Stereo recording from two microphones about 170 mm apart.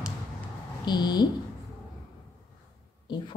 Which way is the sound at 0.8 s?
25° left (ahead or behind).